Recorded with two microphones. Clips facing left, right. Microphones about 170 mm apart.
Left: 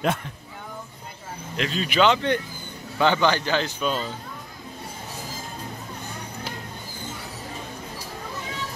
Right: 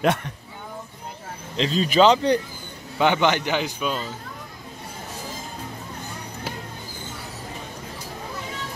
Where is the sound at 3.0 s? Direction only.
20° right (ahead or behind).